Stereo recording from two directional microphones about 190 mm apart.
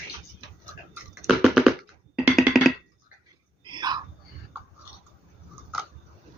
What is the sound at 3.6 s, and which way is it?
Whispering, 25° right (ahead or behind).